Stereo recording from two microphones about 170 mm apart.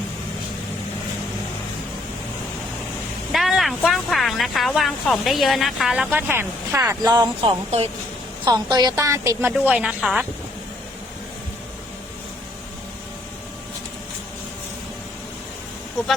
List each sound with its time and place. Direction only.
3.3 s a woman's voice: centre (ahead or behind); by 9.5 s 15° right (ahead or behind)
9.5 s a woman's voice: 5° right (ahead or behind)